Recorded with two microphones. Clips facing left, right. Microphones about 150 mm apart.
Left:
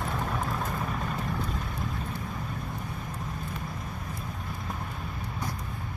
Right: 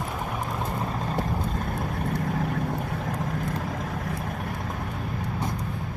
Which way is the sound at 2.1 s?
75° right (ahead or behind).